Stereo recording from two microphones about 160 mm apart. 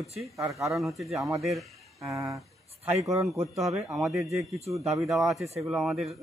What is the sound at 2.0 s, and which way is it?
Speech, 20° right (ahead or behind).